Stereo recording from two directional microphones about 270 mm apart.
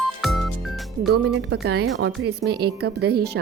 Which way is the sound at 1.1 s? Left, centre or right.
Right.